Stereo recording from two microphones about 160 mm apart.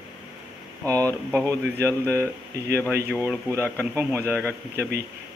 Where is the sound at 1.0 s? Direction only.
5° left (ahead or behind).